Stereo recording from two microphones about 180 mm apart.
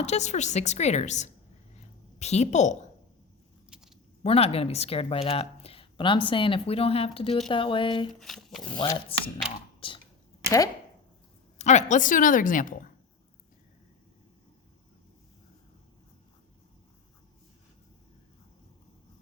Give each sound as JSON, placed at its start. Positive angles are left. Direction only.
{"t": 0.0, "sound": "speech", "side_deg": 40}
{"t": 3.7, "sound": "a sound", "side_deg": -5}
{"t": 4.2, "sound": "speech", "side_deg": 35}
{"t": 8.2, "sound": "speech", "side_deg": 0}
{"t": 8.8, "sound": "speech", "side_deg": 25}
{"t": 11.5, "sound": "a woman's voice", "side_deg": 40}